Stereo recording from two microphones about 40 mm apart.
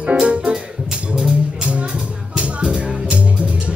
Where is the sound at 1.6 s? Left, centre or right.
Right.